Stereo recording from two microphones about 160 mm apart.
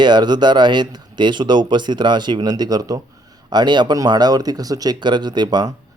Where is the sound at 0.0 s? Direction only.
25° right (ahead or behind).